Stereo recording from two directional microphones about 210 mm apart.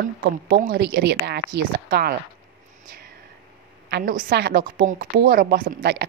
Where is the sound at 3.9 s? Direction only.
40° right (ahead or behind).